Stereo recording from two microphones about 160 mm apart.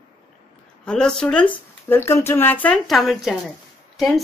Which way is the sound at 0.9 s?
5° left (ahead or behind).